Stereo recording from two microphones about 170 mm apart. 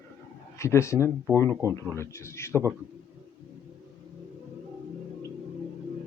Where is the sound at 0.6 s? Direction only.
15° left (ahead or behind).